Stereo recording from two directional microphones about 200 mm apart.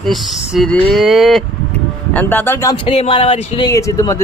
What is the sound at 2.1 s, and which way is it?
Speech, 10° left (ahead or behind).